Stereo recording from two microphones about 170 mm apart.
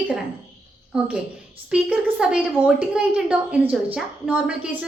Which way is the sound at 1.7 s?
5° right (ahead or behind).